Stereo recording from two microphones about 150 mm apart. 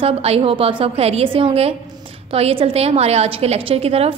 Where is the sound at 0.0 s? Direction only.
40° right (ahead or behind).